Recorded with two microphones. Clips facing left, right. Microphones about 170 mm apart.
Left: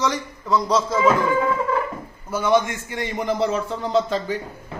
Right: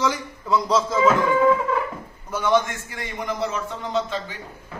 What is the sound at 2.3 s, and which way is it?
Speech, 10° left (ahead or behind).